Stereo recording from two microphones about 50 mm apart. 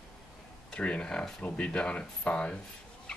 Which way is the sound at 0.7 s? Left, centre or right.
Left.